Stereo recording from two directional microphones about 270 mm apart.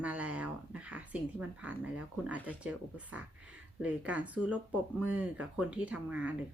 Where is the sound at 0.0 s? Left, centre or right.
Centre.